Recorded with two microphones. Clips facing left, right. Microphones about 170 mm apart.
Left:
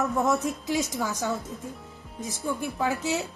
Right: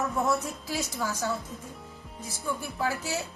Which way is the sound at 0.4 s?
20° left (ahead or behind).